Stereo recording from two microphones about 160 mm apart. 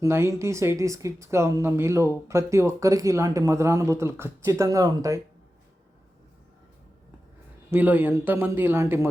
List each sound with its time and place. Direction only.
0.0 s speech: 15° right (ahead or behind)
7.7 s speech: 10° right (ahead or behind)